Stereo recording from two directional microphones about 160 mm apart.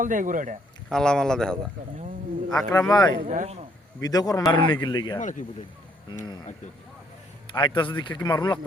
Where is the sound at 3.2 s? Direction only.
50° right (ahead or behind).